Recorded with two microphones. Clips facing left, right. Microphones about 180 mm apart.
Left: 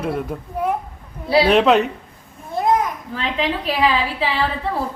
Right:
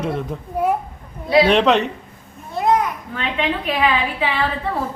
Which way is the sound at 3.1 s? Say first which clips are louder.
Even; 35° left (ahead or behind).